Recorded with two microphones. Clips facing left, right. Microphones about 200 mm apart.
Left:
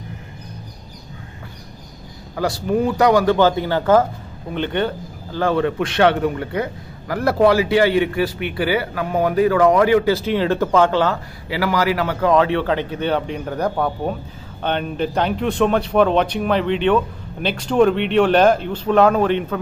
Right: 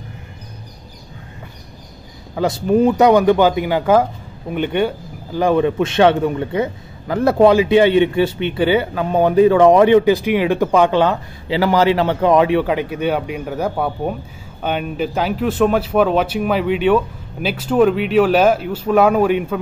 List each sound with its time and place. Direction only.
2.3 s a man's voice: 20° right (ahead or behind)